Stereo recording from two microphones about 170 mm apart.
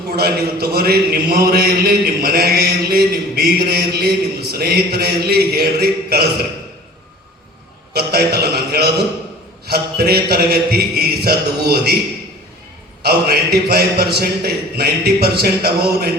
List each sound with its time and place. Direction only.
0.2 s a man's voice: 65° right (ahead or behind)
7.9 s a sound: 65° right (ahead or behind)
13.0 s a man's voice: 65° right (ahead or behind)